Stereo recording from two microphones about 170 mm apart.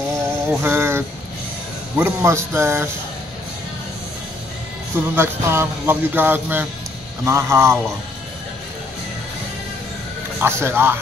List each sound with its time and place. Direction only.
0.5 s speech: 15° right (ahead or behind)
4.9 s speech: 15° right (ahead or behind)
10.4 s speech: 15° right (ahead or behind)